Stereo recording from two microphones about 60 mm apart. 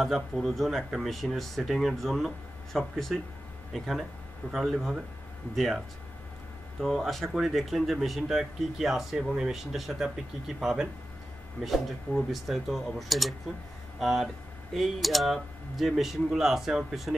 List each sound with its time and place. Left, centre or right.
0.0 s speech: centre
6.8 s speech: centre